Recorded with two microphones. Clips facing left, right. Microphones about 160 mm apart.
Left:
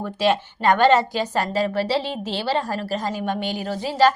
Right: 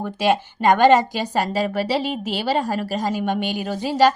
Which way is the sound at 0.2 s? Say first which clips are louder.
Right 1 dB; 15° right (ahead or behind).